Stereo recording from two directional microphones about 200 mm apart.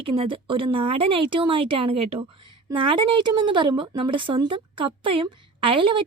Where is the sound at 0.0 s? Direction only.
25° right (ahead or behind).